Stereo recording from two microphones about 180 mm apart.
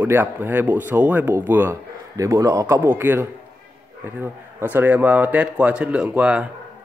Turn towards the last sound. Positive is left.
turn(degrees=-5)  # may be behind; listen again after turning